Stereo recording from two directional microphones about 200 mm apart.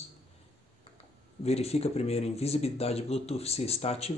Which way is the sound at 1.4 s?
30° left (ahead or behind).